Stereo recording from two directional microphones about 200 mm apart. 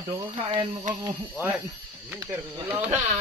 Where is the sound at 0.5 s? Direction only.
25° right (ahead or behind).